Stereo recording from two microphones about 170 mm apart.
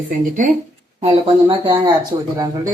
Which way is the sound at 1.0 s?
35° right (ahead or behind).